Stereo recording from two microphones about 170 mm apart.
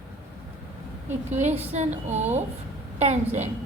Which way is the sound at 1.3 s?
40° right (ahead or behind).